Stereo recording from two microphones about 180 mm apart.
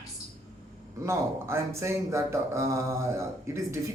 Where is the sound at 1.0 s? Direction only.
15° right (ahead or behind).